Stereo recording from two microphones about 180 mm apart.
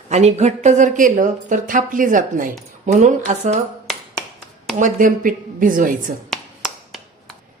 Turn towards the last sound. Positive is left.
turn(degrees=0)  # may be behind; listen again after turning